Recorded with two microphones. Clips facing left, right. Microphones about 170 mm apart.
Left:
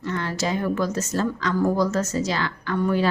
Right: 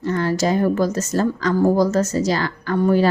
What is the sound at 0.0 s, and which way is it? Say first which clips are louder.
A woman's voice: right 7 dB; 40° right (ahead or behind).